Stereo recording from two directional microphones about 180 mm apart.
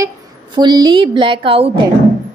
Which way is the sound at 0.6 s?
25° right (ahead or behind).